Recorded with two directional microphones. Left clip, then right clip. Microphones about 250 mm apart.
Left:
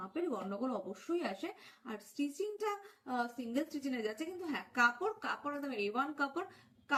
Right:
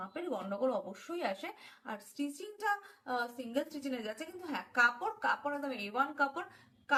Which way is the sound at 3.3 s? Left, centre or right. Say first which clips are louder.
Right 1 dB; centre.